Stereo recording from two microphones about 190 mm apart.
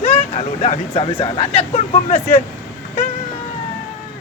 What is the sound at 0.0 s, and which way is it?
Speech, 35° left (ahead or behind).